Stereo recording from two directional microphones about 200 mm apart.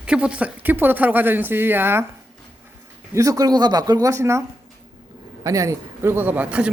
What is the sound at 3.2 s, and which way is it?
Speech, 15° right (ahead or behind).